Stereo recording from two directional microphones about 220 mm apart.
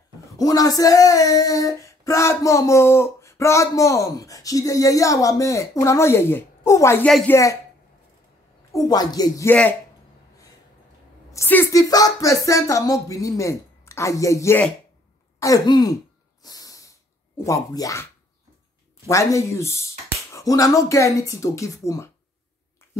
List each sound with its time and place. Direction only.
0.4 s female singing: 15° left (ahead or behind)
8.7 s female singing: 15° left (ahead or behind)
11.3 s female singing: 10° left (ahead or behind)
16.4 s snort: 15° left (ahead or behind)
17.4 s female singing: 15° left (ahead or behind)
19.0 s female singing: 15° left (ahead or behind)